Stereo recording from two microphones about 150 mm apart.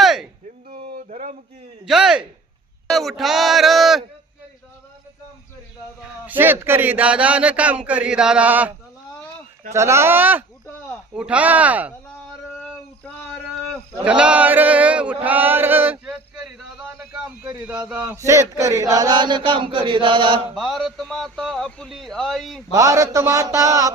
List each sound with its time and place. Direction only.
0.0 s a sound: centre (ahead or behind)
0.7 s a sound: 65° right (ahead or behind)
1.8 s a man's voice: 5° right (ahead or behind)
6.0 s speech: 10° right (ahead or behind)
9.7 s speech: 20° right (ahead or behind)
12.5 s a sound: 5° left (ahead or behind)
14.0 s chant: 5° right (ahead or behind)
17.4 s a man's voice: 20° right (ahead or behind)
17.8 s speech: 10° right (ahead or behind)
18.3 s chant: 20° right (ahead or behind)
20.6 s a man's voice: centre (ahead or behind)
22.7 s a man's voice: 20° right (ahead or behind)